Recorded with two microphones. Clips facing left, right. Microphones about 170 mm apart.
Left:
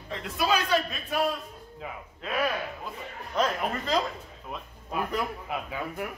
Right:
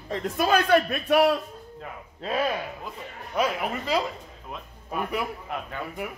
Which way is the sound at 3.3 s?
10° right (ahead or behind).